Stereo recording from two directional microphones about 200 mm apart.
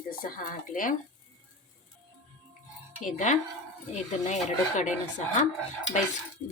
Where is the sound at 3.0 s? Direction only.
40° left (ahead or behind).